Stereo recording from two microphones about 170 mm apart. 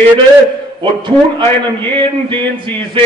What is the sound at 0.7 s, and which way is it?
A man's voice, 30° right (ahead or behind).